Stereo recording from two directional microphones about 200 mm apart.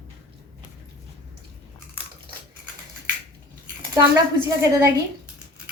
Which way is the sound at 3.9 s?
15° right (ahead or behind).